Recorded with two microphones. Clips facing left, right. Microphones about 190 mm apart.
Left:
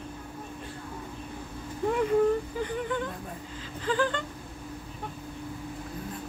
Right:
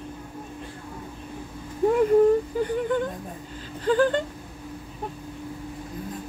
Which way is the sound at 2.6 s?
40° right (ahead or behind).